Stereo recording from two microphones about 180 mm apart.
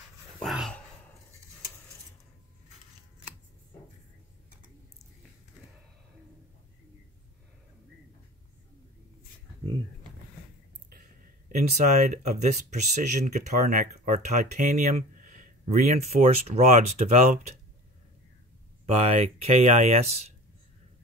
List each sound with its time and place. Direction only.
0.4 s dog: centre (ahead or behind)
10.9 s speech: 50° right (ahead or behind)
18.9 s speech: 40° right (ahead or behind)